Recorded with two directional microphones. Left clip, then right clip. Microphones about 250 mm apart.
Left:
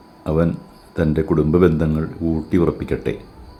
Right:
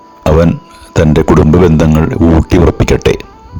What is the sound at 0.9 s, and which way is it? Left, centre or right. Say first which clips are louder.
Speech: right 11 dB; right.